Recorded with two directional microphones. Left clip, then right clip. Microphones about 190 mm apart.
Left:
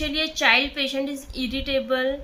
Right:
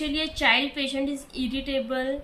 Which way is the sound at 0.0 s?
15° left (ahead or behind).